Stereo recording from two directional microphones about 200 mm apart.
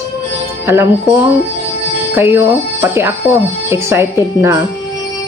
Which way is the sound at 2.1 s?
10° right (ahead or behind).